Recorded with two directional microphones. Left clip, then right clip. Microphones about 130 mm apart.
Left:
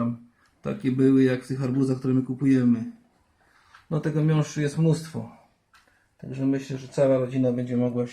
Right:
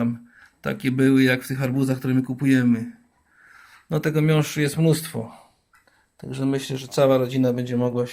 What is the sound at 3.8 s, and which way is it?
Speech, 25° right (ahead or behind).